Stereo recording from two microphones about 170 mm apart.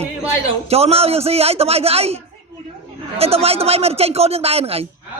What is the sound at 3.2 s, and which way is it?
Speech, 35° right (ahead or behind).